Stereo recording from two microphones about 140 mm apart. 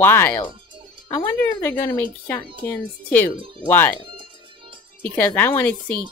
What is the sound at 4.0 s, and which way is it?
Music, 35° right (ahead or behind).